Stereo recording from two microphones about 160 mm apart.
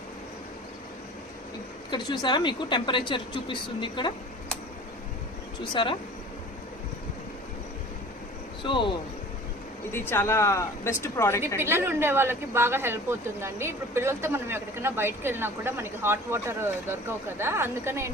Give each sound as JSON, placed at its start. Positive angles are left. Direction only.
{"t": 1.9, "sound": "a woman's voice", "side_deg": 25}
{"t": 5.7, "sound": "speech", "side_deg": 30}
{"t": 8.6, "sound": "speech", "side_deg": 30}
{"t": 9.9, "sound": "speech", "side_deg": 15}
{"t": 11.3, "sound": "a woman's voice", "side_deg": -15}